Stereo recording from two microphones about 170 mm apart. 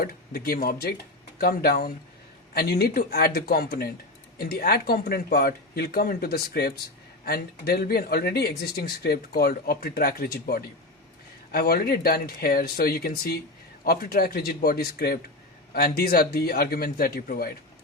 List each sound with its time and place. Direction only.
0.0 s speech: 60° left (ahead or behind)